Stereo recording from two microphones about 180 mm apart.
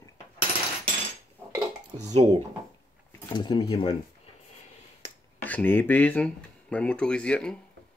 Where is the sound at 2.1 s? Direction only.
35° right (ahead or behind).